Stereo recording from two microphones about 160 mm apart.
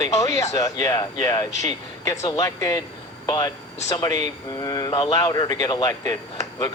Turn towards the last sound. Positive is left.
turn(degrees=20)  # may be behind; listen again after turning